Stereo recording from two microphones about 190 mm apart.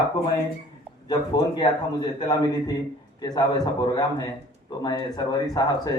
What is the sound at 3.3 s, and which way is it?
Speech, 20° left (ahead or behind).